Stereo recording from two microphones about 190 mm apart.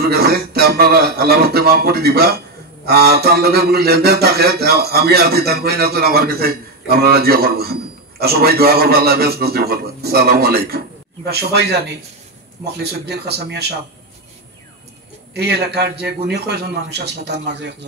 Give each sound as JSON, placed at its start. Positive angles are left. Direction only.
{"t": 0.0, "sound": "a man's voice", "side_deg": -55}
{"t": 12.7, "sound": "a man's voice", "side_deg": -60}
{"t": 15.3, "sound": "a man's voice", "side_deg": -60}